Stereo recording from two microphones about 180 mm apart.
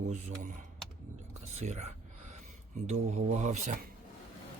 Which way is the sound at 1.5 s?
40° right (ahead or behind).